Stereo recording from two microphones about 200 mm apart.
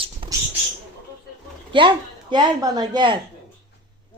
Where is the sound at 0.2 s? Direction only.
25° right (ahead or behind).